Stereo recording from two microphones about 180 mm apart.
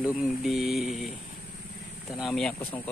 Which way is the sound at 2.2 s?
Centre (ahead or behind).